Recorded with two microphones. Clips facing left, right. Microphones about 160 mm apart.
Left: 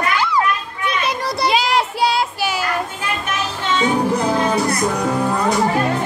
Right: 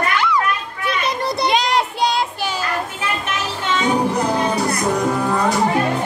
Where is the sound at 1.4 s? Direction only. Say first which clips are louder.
Left 1 dB; 5° left (ahead or behind).